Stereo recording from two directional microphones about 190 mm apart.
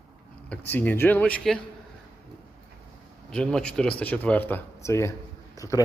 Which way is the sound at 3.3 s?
5° left (ahead or behind).